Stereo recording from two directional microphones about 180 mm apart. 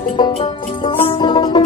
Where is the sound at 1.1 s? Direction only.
25° left (ahead or behind).